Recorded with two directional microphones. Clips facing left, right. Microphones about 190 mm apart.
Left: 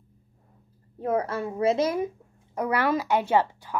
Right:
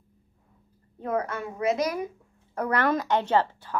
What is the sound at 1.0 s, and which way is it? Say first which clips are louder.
A woman's voice: left 3 dB; 30° left (ahead or behind).